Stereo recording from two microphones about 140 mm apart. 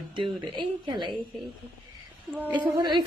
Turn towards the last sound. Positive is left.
turn(degrees=-30)  # may be behind; listen again after turning